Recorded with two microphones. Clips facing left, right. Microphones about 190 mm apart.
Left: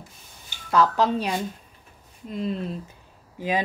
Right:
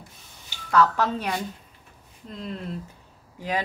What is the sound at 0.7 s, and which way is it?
Speech, 15° left (ahead or behind).